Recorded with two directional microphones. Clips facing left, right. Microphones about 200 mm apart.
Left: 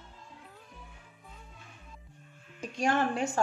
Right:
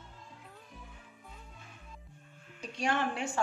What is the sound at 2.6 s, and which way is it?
Speech, 45° left (ahead or behind).